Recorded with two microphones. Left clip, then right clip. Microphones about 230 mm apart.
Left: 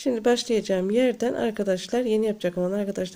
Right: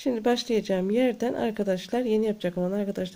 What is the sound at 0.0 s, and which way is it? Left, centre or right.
Speech, centre.